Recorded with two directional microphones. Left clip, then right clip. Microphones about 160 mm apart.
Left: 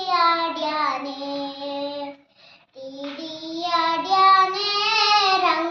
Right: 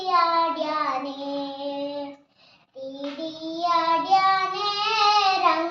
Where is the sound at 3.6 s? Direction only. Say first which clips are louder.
Even; 20° right (ahead or behind).